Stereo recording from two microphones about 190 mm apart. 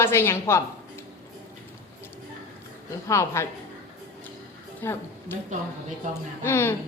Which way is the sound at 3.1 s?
15° left (ahead or behind).